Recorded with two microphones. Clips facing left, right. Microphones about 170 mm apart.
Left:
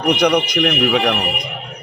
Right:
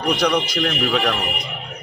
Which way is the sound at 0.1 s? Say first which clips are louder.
Left 4 dB; 20° left (ahead or behind).